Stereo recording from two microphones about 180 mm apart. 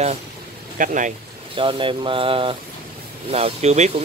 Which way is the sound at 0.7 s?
45° right (ahead or behind).